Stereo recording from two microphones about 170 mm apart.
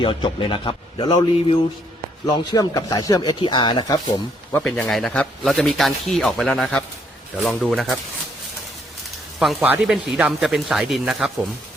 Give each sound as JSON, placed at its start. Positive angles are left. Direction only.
{"t": 0.0, "sound": "speech", "side_deg": 30}
{"t": 4.5, "sound": "a man's voice", "side_deg": 0}
{"t": 9.4, "sound": "a man's voice", "side_deg": -5}